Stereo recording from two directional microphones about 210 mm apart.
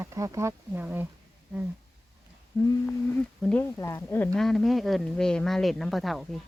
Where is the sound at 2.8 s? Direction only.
5° left (ahead or behind).